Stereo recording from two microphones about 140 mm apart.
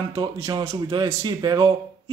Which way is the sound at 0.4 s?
25° right (ahead or behind).